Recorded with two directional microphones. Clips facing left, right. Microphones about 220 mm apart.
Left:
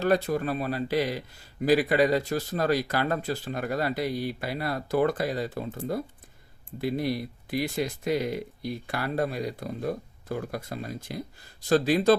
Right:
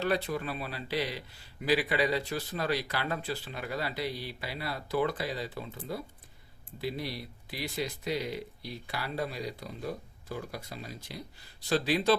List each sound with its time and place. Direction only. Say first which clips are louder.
0.0 s a man's voice: left 6 dB; 45° left (ahead or behind)